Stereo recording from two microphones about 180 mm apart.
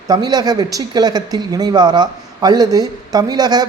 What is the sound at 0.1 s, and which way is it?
Speech, 20° right (ahead or behind).